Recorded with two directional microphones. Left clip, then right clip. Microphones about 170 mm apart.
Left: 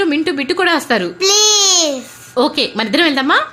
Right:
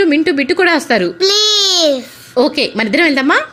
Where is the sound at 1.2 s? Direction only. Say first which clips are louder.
Left 1 dB; 5° right (ahead or behind).